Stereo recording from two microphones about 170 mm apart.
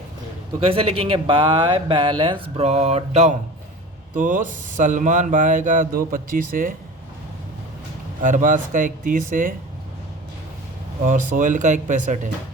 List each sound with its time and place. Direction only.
0.6 s speech: 35° right (ahead or behind)
4.1 s speech: 50° right (ahead or behind)
8.2 s speech: 50° right (ahead or behind)
11.0 s speech: 50° right (ahead or behind)